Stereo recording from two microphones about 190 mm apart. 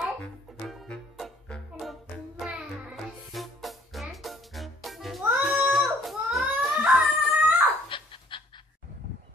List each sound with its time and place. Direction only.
0.0 s music: centre (ahead or behind)
7.9 s dog: 25° left (ahead or behind)